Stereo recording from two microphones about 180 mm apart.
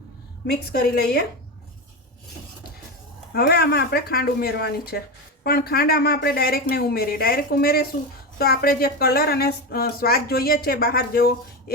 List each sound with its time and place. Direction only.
0.4 s a woman's voice: 60° left (ahead or behind)
3.3 s a woman's voice: 60° left (ahead or behind)